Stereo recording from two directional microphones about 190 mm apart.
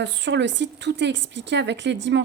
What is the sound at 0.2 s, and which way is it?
A woman's voice, 70° right (ahead or behind).